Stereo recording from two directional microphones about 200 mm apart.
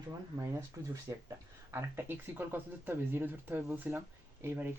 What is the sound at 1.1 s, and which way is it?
Speech, 15° right (ahead or behind).